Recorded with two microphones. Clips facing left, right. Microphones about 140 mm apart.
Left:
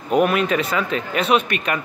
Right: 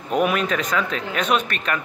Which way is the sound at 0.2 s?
5° left (ahead or behind).